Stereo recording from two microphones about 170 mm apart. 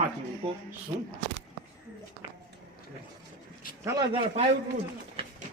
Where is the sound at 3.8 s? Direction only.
20° right (ahead or behind).